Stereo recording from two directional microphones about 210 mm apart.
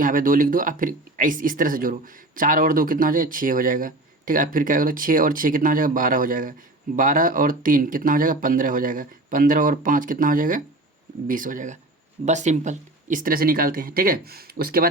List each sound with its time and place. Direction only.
0.0 s speech: 40° right (ahead or behind)